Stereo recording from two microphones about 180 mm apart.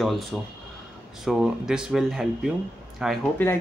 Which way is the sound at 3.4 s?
10° left (ahead or behind).